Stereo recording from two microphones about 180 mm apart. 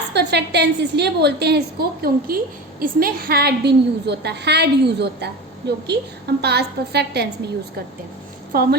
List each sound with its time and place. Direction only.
0.1 s a woman's voice: 65° right (ahead or behind)
8.5 s a woman's voice: 55° right (ahead or behind)